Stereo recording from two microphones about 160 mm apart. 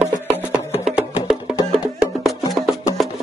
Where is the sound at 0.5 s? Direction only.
5° right (ahead or behind).